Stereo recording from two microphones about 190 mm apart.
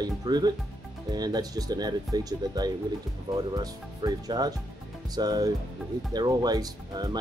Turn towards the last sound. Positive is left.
turn(degrees=-20)  # may be behind; listen again after turning